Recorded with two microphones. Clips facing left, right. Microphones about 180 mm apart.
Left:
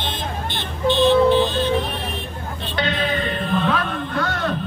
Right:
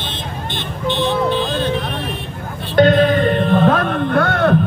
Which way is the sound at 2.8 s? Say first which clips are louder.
Right 12 dB; 45° right (ahead or behind).